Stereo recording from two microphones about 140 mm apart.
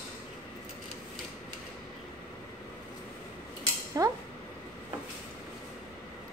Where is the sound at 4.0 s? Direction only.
25° right (ahead or behind).